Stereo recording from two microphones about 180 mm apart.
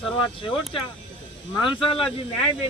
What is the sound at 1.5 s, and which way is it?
Speech, 25° left (ahead or behind).